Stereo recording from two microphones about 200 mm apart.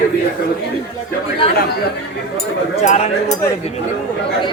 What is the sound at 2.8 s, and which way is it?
Speech, 35° left (ahead or behind).